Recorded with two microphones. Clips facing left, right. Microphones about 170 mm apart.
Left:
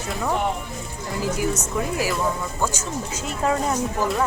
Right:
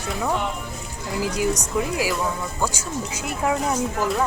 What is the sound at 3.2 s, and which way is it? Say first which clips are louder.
Speech: left 1 dB; 10° right (ahead or behind).